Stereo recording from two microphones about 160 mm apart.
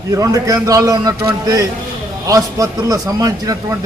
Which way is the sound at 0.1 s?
20° right (ahead or behind).